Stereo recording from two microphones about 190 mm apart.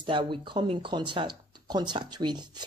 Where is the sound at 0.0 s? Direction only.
25° right (ahead or behind).